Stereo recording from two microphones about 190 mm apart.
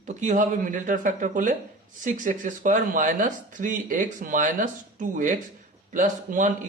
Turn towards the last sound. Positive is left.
turn(degrees=-40)  # may be behind; listen again after turning